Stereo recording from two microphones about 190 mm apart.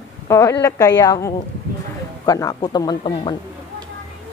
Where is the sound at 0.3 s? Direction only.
15° left (ahead or behind).